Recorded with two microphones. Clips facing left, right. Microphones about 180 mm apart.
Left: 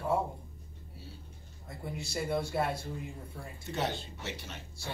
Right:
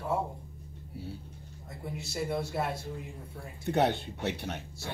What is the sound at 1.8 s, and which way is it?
Speech, centre (ahead or behind).